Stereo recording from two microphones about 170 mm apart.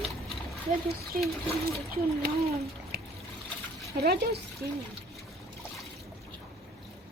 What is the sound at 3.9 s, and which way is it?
Speech, 70° right (ahead or behind).